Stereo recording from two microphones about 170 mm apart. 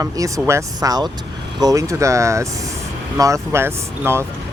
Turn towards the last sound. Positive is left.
turn(degrees=-15)  # may be behind; listen again after turning